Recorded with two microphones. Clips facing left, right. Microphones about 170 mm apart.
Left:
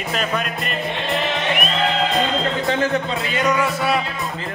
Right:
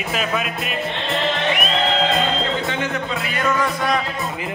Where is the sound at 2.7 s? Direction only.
35° left (ahead or behind); by 3.6 s 20° left (ahead or behind).